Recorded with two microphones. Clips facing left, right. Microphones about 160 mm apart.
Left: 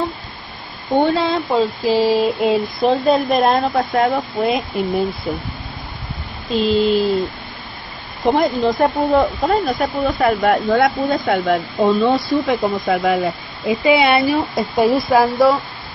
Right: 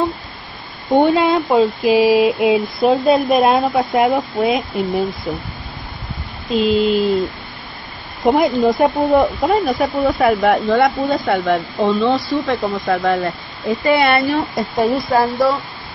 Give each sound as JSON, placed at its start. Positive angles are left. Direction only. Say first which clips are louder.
{"t": 0.9, "sound": "speech", "louder": "right 3 dB", "side_deg": -15}
{"t": 2.1, "sound": "speech", "louder": "right 2 dB", "side_deg": 0}
{"t": 6.5, "sound": "speech", "louder": "right 1 dB", "side_deg": 0}
{"t": 8.3, "sound": "speech", "louder": "right 2 dB", "side_deg": 0}
{"t": 12.0, "sound": "speech", "louder": "left 1 dB", "side_deg": 20}
{"t": 12.6, "sound": "speech", "louder": "even", "side_deg": 0}